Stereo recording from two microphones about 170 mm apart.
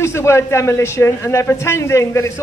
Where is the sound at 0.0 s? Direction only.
15° left (ahead or behind).